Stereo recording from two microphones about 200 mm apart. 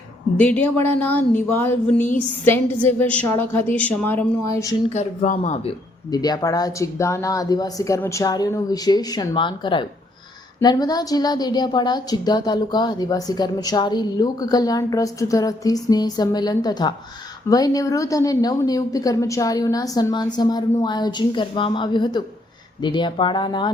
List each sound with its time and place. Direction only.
0.3 s speech: 5° left (ahead or behind)
4.9 s speech: 35° left (ahead or behind)
6.1 s a woman's voice: 20° left (ahead or behind)